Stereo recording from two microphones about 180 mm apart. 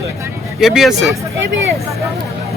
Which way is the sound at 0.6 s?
Centre (ahead or behind).